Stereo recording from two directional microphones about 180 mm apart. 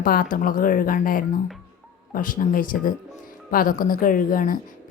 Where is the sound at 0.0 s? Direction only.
50° left (ahead or behind).